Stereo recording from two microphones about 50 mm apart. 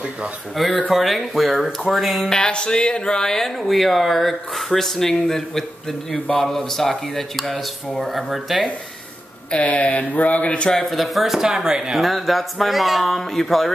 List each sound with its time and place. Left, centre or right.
0.6 s speech: centre
2.2 s speech: centre
9.5 s speech: left
10.7 s speech: centre
12.0 s speech: centre